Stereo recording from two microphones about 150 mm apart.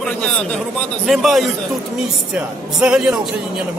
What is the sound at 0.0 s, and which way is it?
A man's voice, 5° left (ahead or behind).